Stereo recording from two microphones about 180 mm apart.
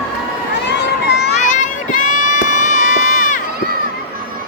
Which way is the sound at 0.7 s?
70° left (ahead or behind).